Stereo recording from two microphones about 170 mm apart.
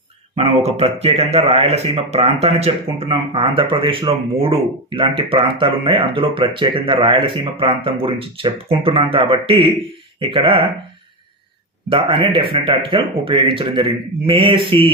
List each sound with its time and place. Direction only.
0.3 s speech: 35° right (ahead or behind)
11.9 s speech: 30° right (ahead or behind)